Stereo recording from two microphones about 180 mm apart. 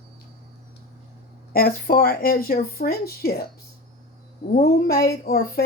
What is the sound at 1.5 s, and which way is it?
Speech, 55° left (ahead or behind).